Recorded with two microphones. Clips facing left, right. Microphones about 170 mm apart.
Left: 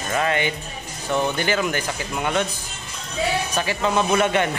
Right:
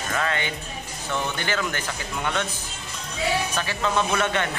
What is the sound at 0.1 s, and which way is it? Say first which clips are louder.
Speech: left 5 dB; 20° left (ahead or behind).